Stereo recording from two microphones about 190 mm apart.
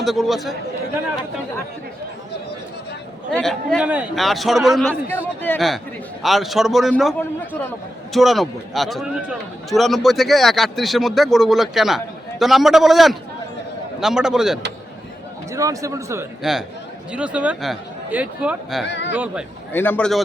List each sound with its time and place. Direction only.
0.0 s speech: centre (ahead or behind)
3.3 s speech: 5° left (ahead or behind)
15.5 s speech: 15° right (ahead or behind)
16.4 s speech: centre (ahead or behind)
18.9 s speech: 70° left (ahead or behind)
19.1 s speech: 10° right (ahead or behind)
19.7 s a man's voice: 10° left (ahead or behind)